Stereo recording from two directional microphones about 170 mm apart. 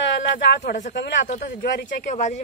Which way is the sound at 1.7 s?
70° left (ahead or behind).